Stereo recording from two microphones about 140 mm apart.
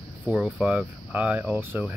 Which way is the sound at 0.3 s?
5° right (ahead or behind).